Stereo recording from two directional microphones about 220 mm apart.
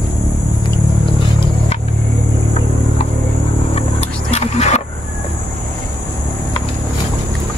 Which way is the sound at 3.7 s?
30° left (ahead or behind).